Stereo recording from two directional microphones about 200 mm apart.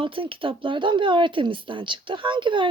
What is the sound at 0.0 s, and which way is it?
Speech, 25° right (ahead or behind).